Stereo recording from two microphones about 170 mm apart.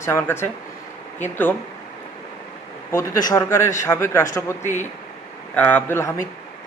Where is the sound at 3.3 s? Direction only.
15° left (ahead or behind).